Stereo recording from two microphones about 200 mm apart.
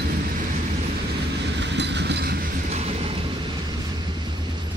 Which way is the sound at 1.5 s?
60° right (ahead or behind).